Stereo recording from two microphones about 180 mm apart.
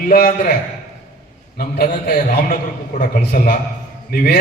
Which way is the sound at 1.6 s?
55° left (ahead or behind).